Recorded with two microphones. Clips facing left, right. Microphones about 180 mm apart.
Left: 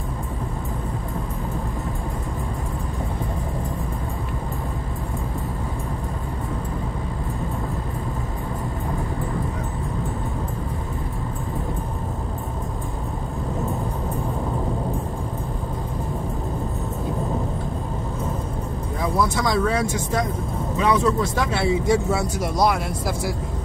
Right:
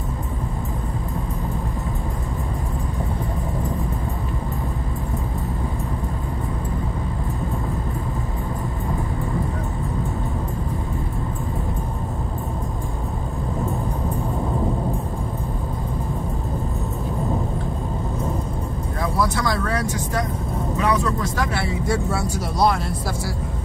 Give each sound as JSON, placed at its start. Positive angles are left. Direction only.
{"t": 20.8, "sound": "speech", "side_deg": 25}